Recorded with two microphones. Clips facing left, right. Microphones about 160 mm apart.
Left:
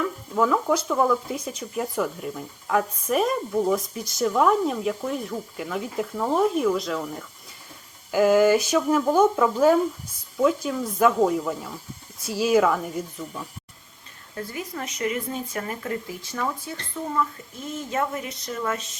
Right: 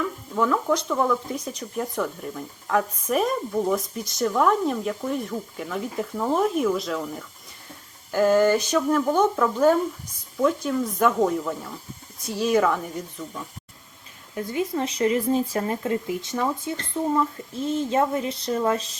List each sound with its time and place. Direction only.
0.3 s speech: 5° left (ahead or behind)
14.3 s speech: 25° right (ahead or behind)